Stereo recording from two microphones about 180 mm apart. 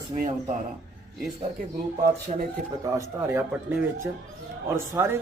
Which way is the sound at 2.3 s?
35° right (ahead or behind).